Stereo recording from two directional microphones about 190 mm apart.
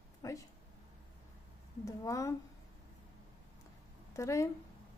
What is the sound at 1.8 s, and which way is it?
Speech, 15° left (ahead or behind).